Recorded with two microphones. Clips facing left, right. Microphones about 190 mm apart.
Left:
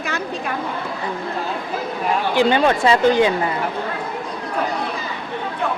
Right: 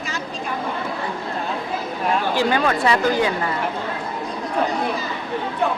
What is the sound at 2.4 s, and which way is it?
Speech, 25° left (ahead or behind).